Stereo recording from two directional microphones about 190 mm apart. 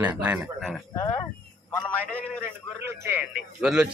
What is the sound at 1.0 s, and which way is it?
Speech, 20° left (ahead or behind).